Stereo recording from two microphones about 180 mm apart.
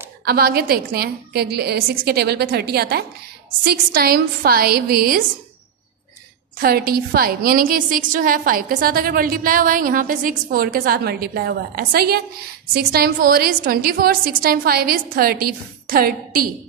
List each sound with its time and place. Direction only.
0.2 s a woman's voice: 60° right (ahead or behind)
6.6 s a woman's voice: 55° right (ahead or behind)